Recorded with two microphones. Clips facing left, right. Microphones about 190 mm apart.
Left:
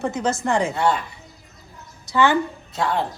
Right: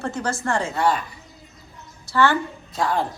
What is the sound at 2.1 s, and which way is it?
Speech, 15° left (ahead or behind).